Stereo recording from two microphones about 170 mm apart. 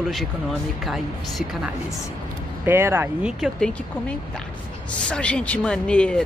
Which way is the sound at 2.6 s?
15° right (ahead or behind).